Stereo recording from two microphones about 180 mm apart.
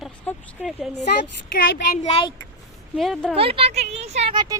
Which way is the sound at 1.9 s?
40° left (ahead or behind).